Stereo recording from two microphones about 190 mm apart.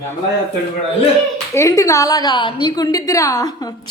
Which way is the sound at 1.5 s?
15° left (ahead or behind).